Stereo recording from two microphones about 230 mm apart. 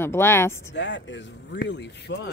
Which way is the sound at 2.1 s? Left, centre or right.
Left.